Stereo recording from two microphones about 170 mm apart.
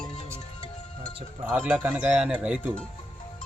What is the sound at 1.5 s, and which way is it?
Speech, 10° right (ahead or behind).